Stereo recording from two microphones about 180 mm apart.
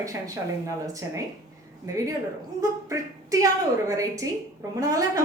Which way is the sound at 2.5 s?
20° right (ahead or behind).